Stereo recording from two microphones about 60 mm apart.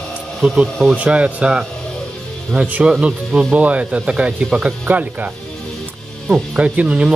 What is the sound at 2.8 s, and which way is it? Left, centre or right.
Speech, centre.